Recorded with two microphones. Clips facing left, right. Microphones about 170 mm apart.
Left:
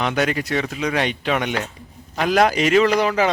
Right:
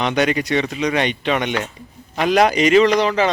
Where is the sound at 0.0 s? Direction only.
5° left (ahead or behind).